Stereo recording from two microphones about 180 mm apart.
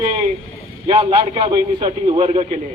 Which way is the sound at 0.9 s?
30° right (ahead or behind).